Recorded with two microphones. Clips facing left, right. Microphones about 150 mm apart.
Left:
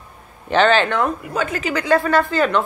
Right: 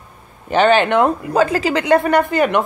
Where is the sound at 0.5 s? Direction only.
10° right (ahead or behind).